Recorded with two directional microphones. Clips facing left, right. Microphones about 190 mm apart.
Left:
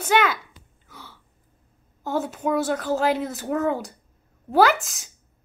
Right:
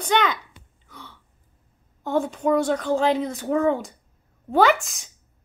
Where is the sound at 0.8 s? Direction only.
5° left (ahead or behind).